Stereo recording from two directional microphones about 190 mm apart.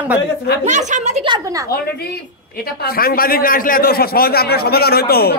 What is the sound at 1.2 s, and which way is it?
Speech, 25° right (ahead or behind).